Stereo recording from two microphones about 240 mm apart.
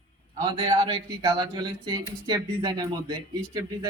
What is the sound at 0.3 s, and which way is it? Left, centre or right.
Speech, right.